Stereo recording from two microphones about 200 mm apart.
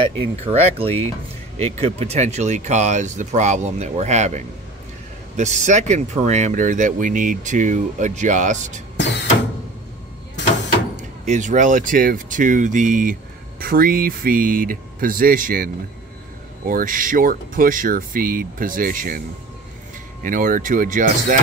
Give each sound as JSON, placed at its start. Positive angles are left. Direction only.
{"t": 0.2, "sound": "speech", "side_deg": -30}
{"t": 5.4, "sound": "speech", "side_deg": -35}
{"t": 11.0, "sound": "speech", "side_deg": -40}
{"t": 20.2, "sound": "speech", "side_deg": -40}